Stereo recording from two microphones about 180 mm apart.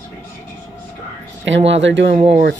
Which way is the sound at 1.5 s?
90° right.